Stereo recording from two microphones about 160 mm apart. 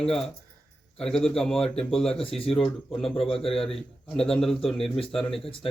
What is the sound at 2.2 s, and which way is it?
Speech, 35° left (ahead or behind).